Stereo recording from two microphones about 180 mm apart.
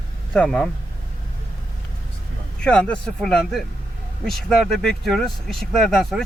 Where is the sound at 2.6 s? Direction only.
5° left (ahead or behind).